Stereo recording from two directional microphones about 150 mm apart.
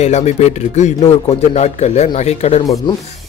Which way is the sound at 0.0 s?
50° left (ahead or behind).